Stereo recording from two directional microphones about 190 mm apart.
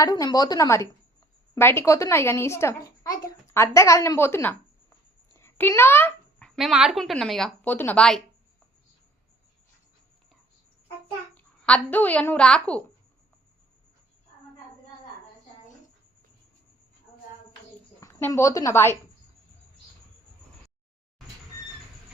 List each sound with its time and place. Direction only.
0.0 s a child's voice: 20° left (ahead or behind)
5.3 s a sound: 15° left (ahead or behind)
6.6 s speech: 5° right (ahead or behind)
11.3 s a woman's voice: 5° left (ahead or behind)
18.0 s a woman's voice: 15° left (ahead or behind)